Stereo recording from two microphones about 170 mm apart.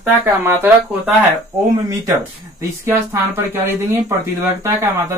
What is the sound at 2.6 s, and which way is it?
Speech, 15° right (ahead or behind).